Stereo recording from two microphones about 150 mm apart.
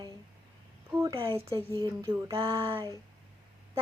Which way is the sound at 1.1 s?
35° right (ahead or behind).